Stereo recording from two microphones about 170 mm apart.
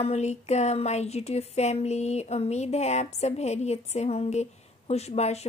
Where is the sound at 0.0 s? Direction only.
40° left (ahead or behind).